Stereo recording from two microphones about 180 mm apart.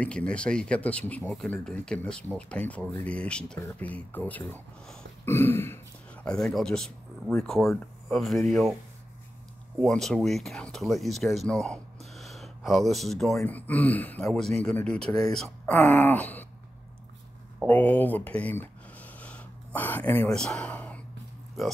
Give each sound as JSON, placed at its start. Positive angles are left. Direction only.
{"t": 0.0, "sound": "speech", "side_deg": 5}
{"t": 6.2, "sound": "speech", "side_deg": 0}
{"t": 9.8, "sound": "speech", "side_deg": 5}
{"t": 17.6, "sound": "speech", "side_deg": 10}